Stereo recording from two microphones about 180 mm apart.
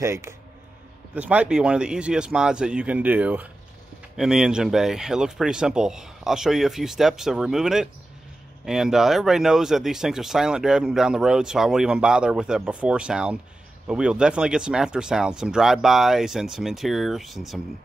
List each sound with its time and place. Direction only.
0.0 s speech: 15° right (ahead or behind)